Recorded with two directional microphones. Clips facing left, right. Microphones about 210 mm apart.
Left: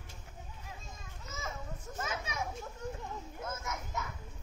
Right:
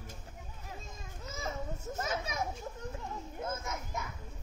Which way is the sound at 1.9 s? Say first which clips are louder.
Right 3 dB; 40° right (ahead or behind).